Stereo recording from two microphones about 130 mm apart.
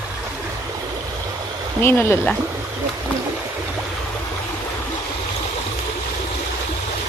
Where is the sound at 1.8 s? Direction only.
15° left (ahead or behind).